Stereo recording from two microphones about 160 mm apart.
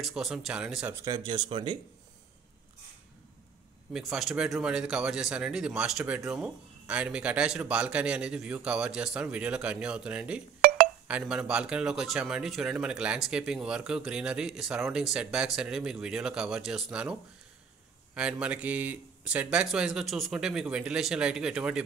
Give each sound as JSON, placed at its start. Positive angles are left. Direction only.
{"t": 0.0, "sound": "speech", "side_deg": 0}
{"t": 1.0, "sound": "speech", "side_deg": -25}
{"t": 3.9, "sound": "speech", "side_deg": 0}